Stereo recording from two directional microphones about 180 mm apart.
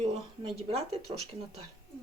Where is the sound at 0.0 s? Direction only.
35° right (ahead or behind).